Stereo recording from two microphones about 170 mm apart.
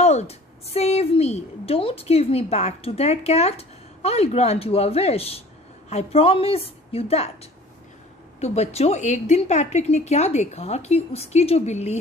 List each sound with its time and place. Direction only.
0.0 s a woman's voice: 40° left (ahead or behind)
8.4 s a woman's voice: 40° left (ahead or behind)